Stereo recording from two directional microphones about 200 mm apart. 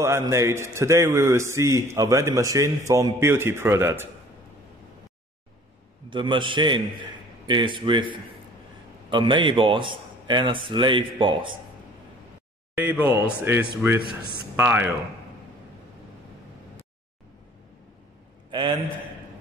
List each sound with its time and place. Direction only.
0.0 s a man's voice: 15° right (ahead or behind)
6.0 s a man's voice: 25° right (ahead or behind)
12.7 s a man's voice: 10° right (ahead or behind)
18.5 s a sound: 25° right (ahead or behind)